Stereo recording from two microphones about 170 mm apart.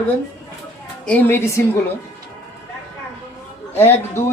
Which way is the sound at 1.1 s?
15° left (ahead or behind).